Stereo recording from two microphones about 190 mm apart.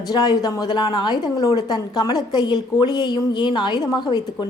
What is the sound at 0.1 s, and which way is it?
A woman's voice, 20° left (ahead or behind).